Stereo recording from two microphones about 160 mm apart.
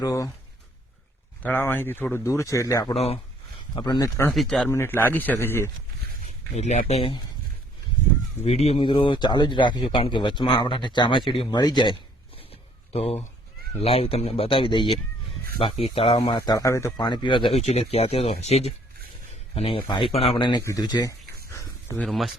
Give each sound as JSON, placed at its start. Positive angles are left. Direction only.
{"t": 0.0, "sound": "a man's voice", "side_deg": 20}
{"t": 1.4, "sound": "speech", "side_deg": 10}
{"t": 2.9, "sound": "speech", "side_deg": 40}
{"t": 3.8, "sound": "a man's voice", "side_deg": 25}
{"t": 4.3, "sound": "speech", "side_deg": 0}
{"t": 4.7, "sound": "speech", "side_deg": 15}
{"t": 6.6, "sound": "speech", "side_deg": 45}
{"t": 8.4, "sound": "a man's voice", "side_deg": 40}
{"t": 12.4, "sound": "a sound", "side_deg": 40}
{"t": 13.8, "sound": "a man's voice", "side_deg": 35}
{"t": 21.5, "sound": "a sound", "side_deg": 20}
{"t": 21.9, "sound": "speech", "side_deg": 0}